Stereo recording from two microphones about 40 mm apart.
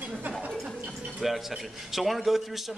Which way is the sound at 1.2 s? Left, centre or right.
Centre.